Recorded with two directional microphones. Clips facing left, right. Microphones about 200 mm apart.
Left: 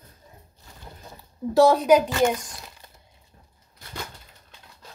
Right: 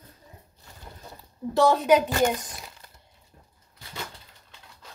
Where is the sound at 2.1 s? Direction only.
45° right (ahead or behind).